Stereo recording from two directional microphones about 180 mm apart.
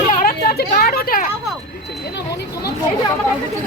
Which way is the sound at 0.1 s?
50° left (ahead or behind).